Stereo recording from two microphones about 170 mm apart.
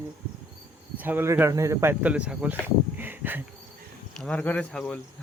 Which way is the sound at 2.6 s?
10° right (ahead or behind).